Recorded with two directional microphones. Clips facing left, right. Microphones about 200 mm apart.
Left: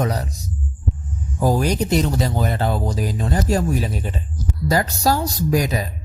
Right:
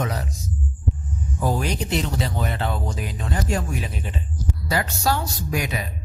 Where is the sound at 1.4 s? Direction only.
40° left (ahead or behind).